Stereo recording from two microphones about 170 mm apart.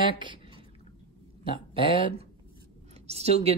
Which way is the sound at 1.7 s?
30° right (ahead or behind).